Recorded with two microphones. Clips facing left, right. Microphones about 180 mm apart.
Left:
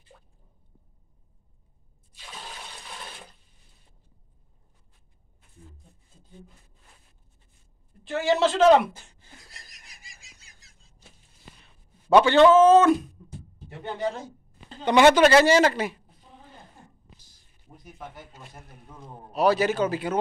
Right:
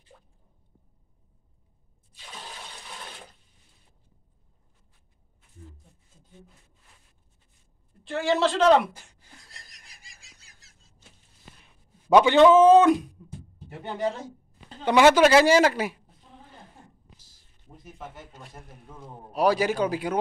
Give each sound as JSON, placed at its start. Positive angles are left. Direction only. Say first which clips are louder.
{"t": 8.0, "sound": "a man's voice", "louder": "left 1 dB", "side_deg": 0}
{"t": 9.5, "sound": "fowl", "louder": "left 1 dB", "side_deg": 0}
{"t": 11.6, "sound": "a sound", "louder": "right 1 dB", "side_deg": -15}
{"t": 14.7, "sound": "speech", "louder": "left 1 dB", "side_deg": -5}
{"t": 17.9, "sound": "a man's voice", "louder": "even", "side_deg": 0}
{"t": 19.3, "sound": "speech", "louder": "left 1 dB", "side_deg": -10}